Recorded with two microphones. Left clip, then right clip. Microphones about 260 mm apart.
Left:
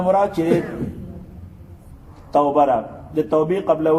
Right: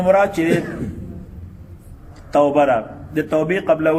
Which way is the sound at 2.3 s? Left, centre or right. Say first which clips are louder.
Right 1 dB; right.